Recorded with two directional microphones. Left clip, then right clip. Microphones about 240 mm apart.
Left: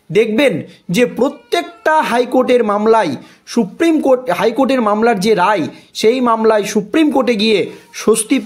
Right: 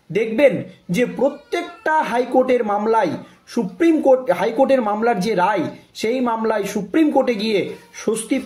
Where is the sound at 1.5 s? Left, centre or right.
Left.